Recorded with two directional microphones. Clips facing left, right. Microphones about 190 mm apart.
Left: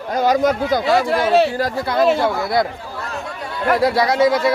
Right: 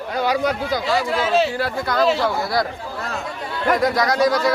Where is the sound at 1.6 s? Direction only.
30° left (ahead or behind).